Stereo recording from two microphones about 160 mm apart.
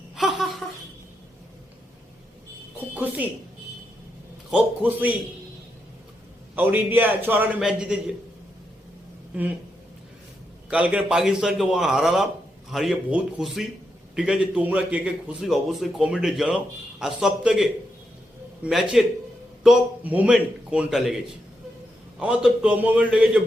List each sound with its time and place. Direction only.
0.2 s a sound: centre (ahead or behind)
2.9 s a man's voice: 10° right (ahead or behind)
4.5 s a man's voice: 10° right (ahead or behind)
6.6 s a man's voice: 10° right (ahead or behind)
10.7 s a man's voice: 5° right (ahead or behind)
22.2 s a man's voice: 5° right (ahead or behind)